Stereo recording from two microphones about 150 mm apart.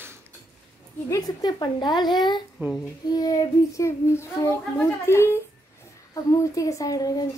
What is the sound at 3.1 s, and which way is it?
A child's voice, 25° left (ahead or behind).